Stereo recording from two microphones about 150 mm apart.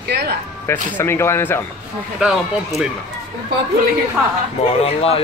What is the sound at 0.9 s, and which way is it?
Speech, 15° left (ahead or behind).